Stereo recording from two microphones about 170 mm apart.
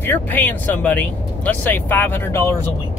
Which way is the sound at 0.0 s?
10° left (ahead or behind).